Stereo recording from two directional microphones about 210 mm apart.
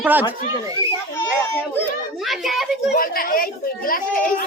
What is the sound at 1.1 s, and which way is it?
Speech, 10° left (ahead or behind).